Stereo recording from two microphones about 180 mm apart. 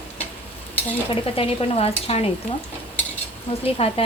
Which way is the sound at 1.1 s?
30° left (ahead or behind).